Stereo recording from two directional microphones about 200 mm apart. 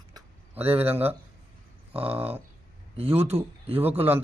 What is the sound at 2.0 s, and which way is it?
Speech, 30° right (ahead or behind).